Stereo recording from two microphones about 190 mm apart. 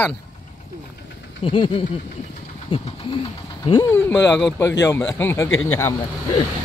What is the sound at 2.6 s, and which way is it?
Bird, 30° left (ahead or behind).